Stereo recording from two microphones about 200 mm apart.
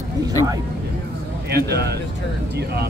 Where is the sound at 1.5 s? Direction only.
55° right (ahead or behind).